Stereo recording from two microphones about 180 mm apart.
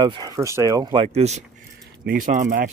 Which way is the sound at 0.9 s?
35° right (ahead or behind).